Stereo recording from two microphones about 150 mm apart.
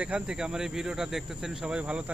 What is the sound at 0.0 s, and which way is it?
Speech, 5° right (ahead or behind).